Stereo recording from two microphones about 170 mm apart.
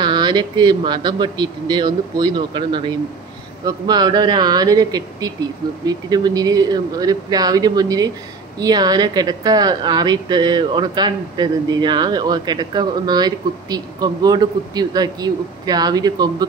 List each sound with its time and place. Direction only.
0.0 s a woman's voice: 25° right (ahead or behind)